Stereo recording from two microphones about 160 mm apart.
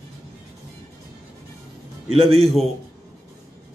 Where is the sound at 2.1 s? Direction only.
35° right (ahead or behind).